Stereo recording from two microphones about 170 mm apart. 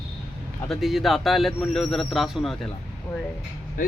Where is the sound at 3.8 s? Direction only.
55° left (ahead or behind).